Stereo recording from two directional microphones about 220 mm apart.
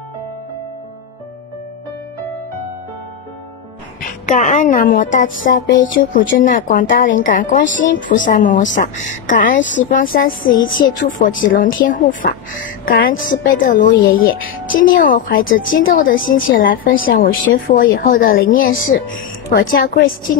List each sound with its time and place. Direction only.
4.3 s a woman's voice: 35° left (ahead or behind)